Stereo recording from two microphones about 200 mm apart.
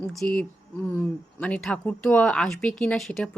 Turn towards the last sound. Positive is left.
turn(degrees=0)  # may be behind; listen again after turning